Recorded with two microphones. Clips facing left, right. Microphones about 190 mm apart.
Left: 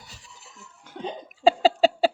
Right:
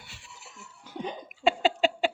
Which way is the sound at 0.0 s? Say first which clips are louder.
Left 1 dB; 40° left (ahead or behind).